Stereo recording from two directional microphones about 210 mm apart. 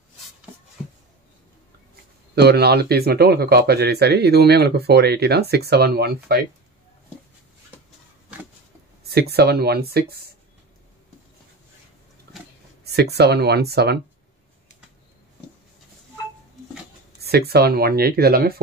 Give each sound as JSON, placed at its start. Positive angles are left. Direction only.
{"t": 2.3, "sound": "speech", "side_deg": -50}
{"t": 9.1, "sound": "speech", "side_deg": -50}
{"t": 12.8, "sound": "speech", "side_deg": -50}
{"t": 17.2, "sound": "speech", "side_deg": -50}